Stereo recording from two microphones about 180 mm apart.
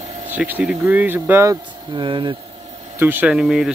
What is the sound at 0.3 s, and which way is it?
A man's voice, 10° right (ahead or behind).